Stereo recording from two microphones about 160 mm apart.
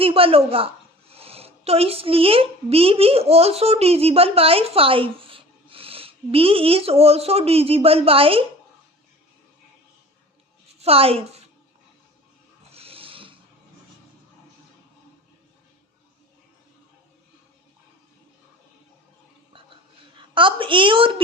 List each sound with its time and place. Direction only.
0.0 s a woman's voice: 35° right (ahead or behind)
10.8 s a woman's voice: 35° right (ahead or behind)
12.7 s rub: 35° right (ahead or behind)
20.1 s a woman's voice: 30° right (ahead or behind)